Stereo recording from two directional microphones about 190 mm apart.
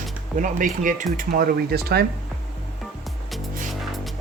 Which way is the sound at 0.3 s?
45° right (ahead or behind).